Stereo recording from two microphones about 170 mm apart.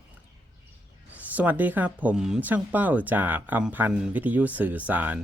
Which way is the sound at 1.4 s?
10° right (ahead or behind).